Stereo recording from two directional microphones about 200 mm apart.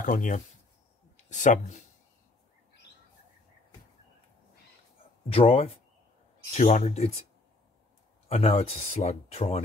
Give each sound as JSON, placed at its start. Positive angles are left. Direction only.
{"t": 0.0, "sound": "speech", "side_deg": 40}
{"t": 5.3, "sound": "speech", "side_deg": 30}
{"t": 8.3, "sound": "speech", "side_deg": 30}